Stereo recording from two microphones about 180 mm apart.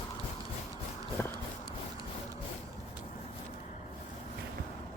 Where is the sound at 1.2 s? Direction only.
15° left (ahead or behind).